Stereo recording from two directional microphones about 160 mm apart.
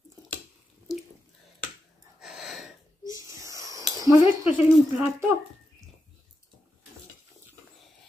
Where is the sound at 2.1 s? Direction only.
5° right (ahead or behind).